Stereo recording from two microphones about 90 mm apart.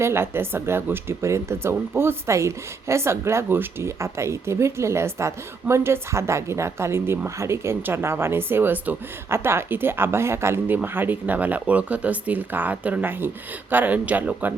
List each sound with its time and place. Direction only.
0.0 s speech: 30° right (ahead or behind)